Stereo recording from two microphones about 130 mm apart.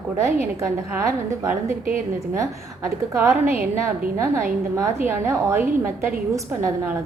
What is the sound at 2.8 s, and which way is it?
A woman's voice, 15° right (ahead or behind).